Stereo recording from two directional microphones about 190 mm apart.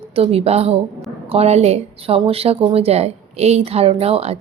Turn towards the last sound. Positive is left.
turn(degrees=-30)  # may be behind; listen again after turning